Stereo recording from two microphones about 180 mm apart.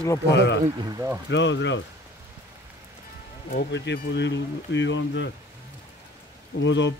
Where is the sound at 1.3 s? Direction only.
85° left.